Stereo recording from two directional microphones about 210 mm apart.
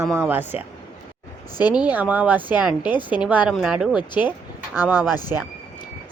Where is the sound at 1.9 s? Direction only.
10° right (ahead or behind).